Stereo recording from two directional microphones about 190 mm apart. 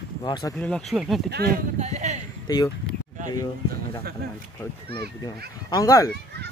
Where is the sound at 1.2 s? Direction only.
55° right (ahead or behind).